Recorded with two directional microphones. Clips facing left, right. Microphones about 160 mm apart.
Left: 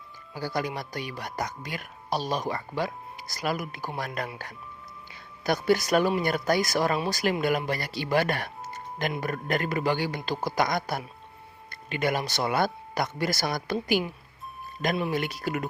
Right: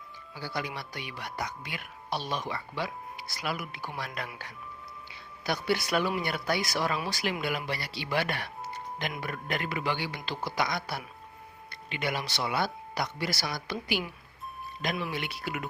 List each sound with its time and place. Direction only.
0.3 s speech: 45° left (ahead or behind)
15.1 s speech: 45° left (ahead or behind)